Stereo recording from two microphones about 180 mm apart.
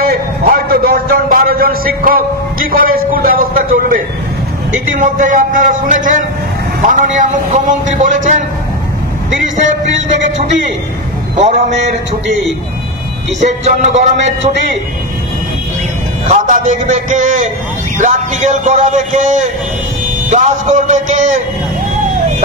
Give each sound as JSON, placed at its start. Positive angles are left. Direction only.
{"t": 0.0, "sound": "a man's voice", "side_deg": -55}
{"t": 13.4, "sound": "speech", "side_deg": -40}
{"t": 16.3, "sound": "a man's voice", "side_deg": -45}